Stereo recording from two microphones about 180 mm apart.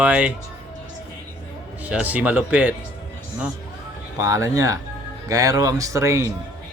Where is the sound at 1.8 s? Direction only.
10° right (ahead or behind).